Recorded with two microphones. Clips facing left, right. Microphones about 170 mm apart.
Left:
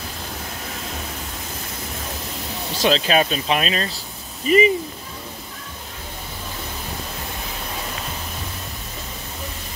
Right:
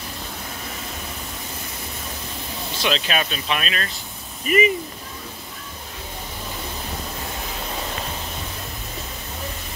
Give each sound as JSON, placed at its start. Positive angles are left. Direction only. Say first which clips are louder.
{"t": 2.8, "sound": "speech", "louder": "left 6 dB", "side_deg": 30}